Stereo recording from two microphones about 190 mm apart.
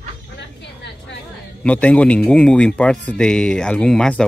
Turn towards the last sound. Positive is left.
turn(degrees=5)  # may be behind; listen again after turning